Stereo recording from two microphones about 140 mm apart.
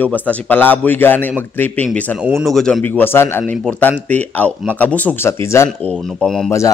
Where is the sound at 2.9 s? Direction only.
15° left (ahead or behind).